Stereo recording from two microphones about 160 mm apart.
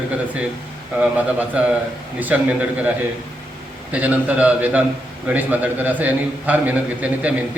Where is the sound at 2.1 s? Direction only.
10° right (ahead or behind).